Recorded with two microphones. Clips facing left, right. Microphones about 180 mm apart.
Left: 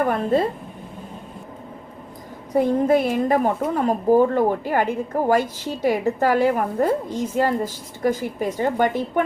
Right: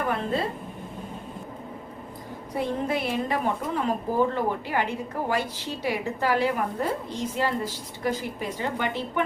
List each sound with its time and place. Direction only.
0.0 s a woman's voice: 50° left (ahead or behind)
2.6 s a woman's voice: 45° left (ahead or behind)